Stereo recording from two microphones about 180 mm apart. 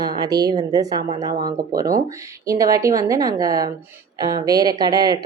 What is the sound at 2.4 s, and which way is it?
Speech, 20° right (ahead or behind).